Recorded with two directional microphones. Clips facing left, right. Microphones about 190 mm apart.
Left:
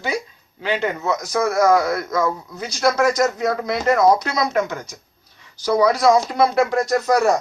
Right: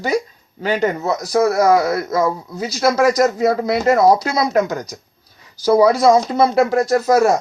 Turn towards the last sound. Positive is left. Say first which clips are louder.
# right 3 dB
turn(degrees=-35)  # may be behind; listen again after turning